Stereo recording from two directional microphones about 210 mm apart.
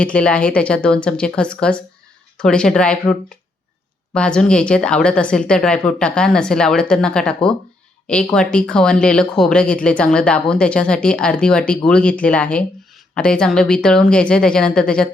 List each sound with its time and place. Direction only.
0.0 s a woman's voice: 5° left (ahead or behind)